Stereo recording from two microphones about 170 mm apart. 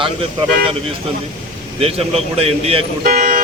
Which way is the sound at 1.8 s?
35° right (ahead or behind).